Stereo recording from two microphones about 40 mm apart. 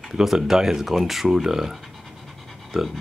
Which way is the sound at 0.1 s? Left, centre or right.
Centre.